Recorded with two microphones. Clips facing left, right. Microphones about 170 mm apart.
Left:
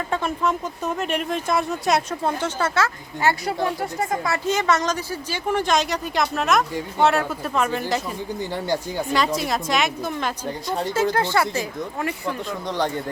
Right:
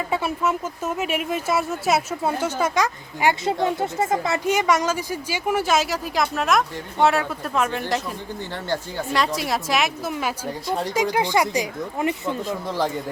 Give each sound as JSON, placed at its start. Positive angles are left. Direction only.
{"t": 0.1, "sound": "speech", "side_deg": -10}
{"t": 4.4, "sound": "a woman's voice", "side_deg": -10}
{"t": 8.4, "sound": "speech", "side_deg": 15}
{"t": 9.1, "sound": "a woman's voice", "side_deg": 0}
{"t": 10.9, "sound": "speech", "side_deg": -15}
{"t": 12.5, "sound": "a woman's voice", "side_deg": -5}